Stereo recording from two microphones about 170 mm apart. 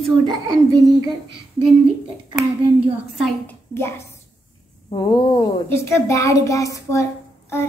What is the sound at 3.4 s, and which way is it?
A woman's voice, 15° left (ahead or behind).